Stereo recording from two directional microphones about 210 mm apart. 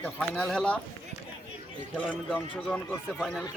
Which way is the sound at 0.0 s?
5° left (ahead or behind).